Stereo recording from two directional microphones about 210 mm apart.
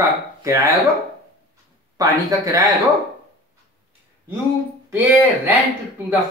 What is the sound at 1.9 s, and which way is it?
Speech, 15° right (ahead or behind).